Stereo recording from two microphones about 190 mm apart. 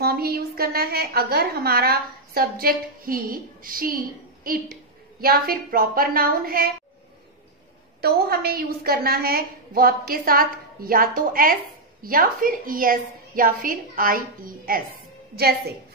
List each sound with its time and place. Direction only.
0.0 s a woman's voice: 55° right (ahead or behind)
8.0 s a woman's voice: 55° right (ahead or behind)